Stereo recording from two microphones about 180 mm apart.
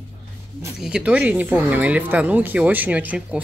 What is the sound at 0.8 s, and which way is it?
Speech, 5° right (ahead or behind).